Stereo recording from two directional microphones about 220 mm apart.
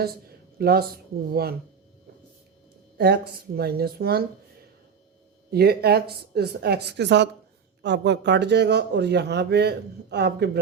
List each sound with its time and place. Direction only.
0.0 s a man's voice: 45° right (ahead or behind)
3.0 s a man's voice: 45° right (ahead or behind)
5.5 s a man's voice: 45° right (ahead or behind)